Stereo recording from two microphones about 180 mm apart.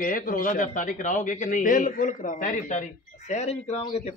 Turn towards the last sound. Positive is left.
turn(degrees=40)  # may be behind; listen again after turning